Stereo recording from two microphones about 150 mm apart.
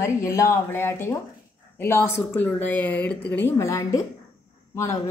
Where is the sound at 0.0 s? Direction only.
20° left (ahead or behind).